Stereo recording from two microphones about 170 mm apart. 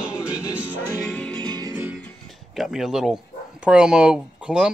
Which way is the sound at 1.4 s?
25° right (ahead or behind).